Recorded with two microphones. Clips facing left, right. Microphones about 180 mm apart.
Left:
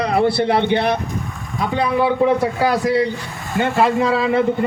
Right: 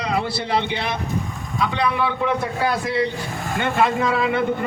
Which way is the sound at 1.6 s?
40° left (ahead or behind).